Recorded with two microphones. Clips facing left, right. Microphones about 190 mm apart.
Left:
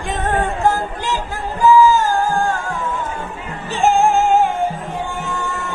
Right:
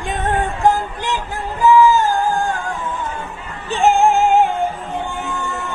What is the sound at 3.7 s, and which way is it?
Music, 20° right (ahead or behind).